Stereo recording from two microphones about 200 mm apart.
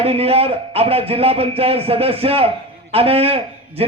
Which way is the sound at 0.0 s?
30° right (ahead or behind).